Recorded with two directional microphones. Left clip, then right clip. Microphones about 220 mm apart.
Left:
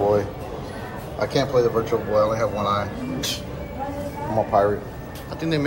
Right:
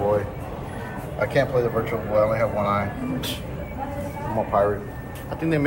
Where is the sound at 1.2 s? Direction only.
15° left (ahead or behind).